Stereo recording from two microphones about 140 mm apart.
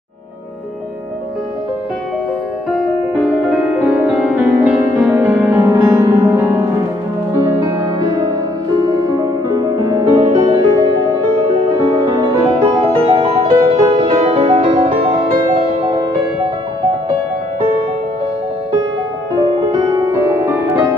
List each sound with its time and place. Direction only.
3.2 s music: centre (ahead or behind)
5.1 s music: 10° right (ahead or behind)
8.0 s music: 25° right (ahead or behind)
13.1 s music: 40° right (ahead or behind)
14.3 s music: 50° right (ahead or behind)
19.3 s music: 30° right (ahead or behind)